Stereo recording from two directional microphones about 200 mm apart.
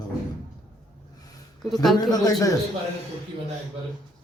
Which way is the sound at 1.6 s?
Centre (ahead or behind).